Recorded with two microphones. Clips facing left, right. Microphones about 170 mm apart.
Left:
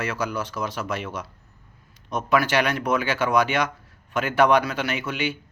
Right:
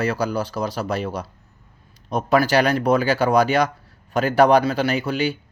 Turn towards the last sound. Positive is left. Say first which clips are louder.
# right 6 dB
turn(degrees=-35)  # may be behind; listen again after turning